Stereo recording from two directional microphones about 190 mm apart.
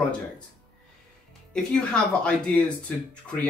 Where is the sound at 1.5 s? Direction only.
5° left (ahead or behind).